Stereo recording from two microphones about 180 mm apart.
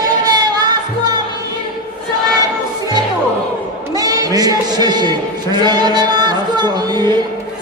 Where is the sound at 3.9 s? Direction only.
20° right (ahead or behind).